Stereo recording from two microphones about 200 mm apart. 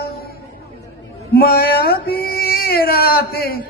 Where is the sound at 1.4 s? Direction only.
50° left (ahead or behind).